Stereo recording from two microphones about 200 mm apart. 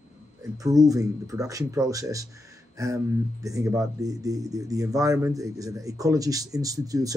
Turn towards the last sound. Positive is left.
turn(degrees=-15)  # may be behind; listen again after turning